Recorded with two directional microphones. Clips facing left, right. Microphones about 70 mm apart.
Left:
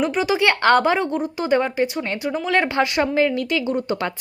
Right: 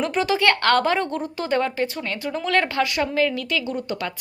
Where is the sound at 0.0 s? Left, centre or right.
Centre.